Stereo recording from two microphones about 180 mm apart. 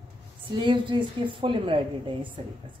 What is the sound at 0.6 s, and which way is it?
A woman's voice, 25° right (ahead or behind).